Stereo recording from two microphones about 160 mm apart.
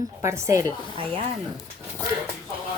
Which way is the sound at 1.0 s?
40° right (ahead or behind).